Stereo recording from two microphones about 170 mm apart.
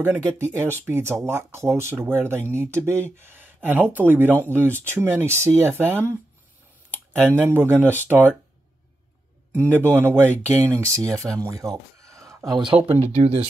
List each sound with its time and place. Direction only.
0.0 s speech: 10° right (ahead or behind)
9.5 s a man's voice: 10° right (ahead or behind)
12.8 s speech: 40° right (ahead or behind)